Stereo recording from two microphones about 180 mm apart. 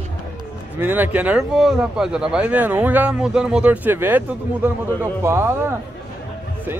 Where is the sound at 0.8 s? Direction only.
10° right (ahead or behind).